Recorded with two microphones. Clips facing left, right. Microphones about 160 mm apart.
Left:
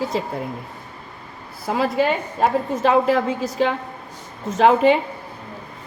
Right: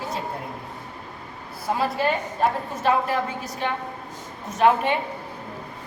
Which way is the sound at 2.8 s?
90° left.